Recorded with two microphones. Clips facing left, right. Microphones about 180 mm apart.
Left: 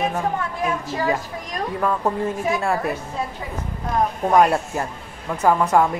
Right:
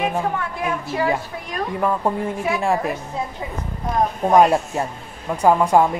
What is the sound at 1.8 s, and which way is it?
A woman's voice, 15° right (ahead or behind).